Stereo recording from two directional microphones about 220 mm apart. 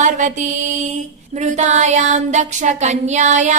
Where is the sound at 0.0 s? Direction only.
35° right (ahead or behind).